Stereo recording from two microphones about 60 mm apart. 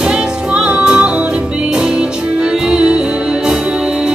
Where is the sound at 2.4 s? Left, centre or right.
Centre.